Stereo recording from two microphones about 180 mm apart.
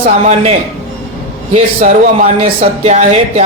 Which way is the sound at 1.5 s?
35° right (ahead or behind).